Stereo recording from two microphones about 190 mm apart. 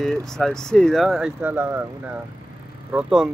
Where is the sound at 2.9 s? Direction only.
5° right (ahead or behind).